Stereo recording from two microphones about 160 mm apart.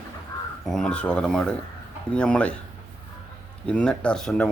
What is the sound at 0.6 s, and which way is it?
Speech, 5° left (ahead or behind).